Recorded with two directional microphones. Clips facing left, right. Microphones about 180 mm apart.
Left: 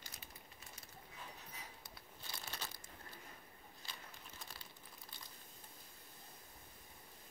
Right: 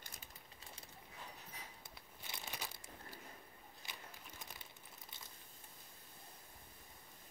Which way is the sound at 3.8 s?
15° right (ahead or behind).